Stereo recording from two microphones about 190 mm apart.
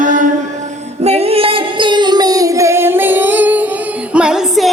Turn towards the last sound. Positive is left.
turn(degrees=-5)  # may be behind; listen again after turning